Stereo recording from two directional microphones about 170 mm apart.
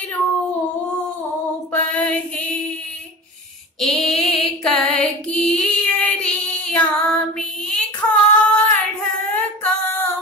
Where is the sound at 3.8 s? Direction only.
Centre (ahead or behind).